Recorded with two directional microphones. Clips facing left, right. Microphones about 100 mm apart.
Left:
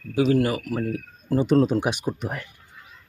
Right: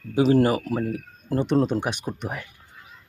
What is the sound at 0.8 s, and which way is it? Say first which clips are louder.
Speech: even; centre (ahead or behind).